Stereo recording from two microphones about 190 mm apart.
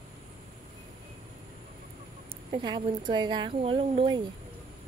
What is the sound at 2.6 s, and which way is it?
Speech, 25° right (ahead or behind).